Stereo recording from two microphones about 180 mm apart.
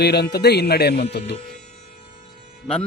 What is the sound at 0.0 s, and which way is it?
Speech, 65° left (ahead or behind).